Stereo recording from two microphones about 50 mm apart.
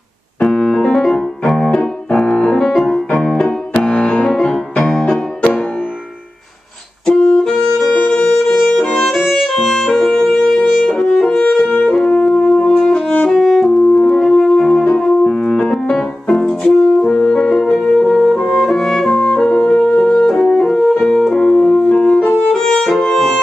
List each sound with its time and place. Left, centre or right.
0.5 s keyboard: centre
1.5 s piano: centre
2.9 s keyboard: centre
3.7 s music: centre
7.1 s music: centre
8.6 s violin: centre
8.9 s music: centre
12.3 s shofar: centre
13.3 s saxophone: centre
15.0 s music: centre